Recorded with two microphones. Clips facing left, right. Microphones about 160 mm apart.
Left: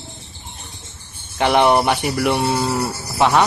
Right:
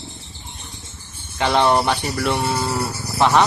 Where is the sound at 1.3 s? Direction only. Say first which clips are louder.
Left 2 dB; 15° left (ahead or behind).